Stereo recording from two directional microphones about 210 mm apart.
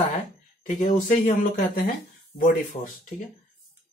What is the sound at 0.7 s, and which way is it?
Speech, 40° left (ahead or behind).